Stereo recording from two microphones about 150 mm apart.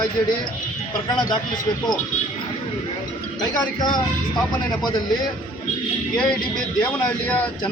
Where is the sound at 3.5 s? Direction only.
30° left (ahead or behind).